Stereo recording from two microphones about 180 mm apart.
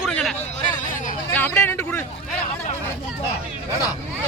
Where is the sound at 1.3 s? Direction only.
10° left (ahead or behind).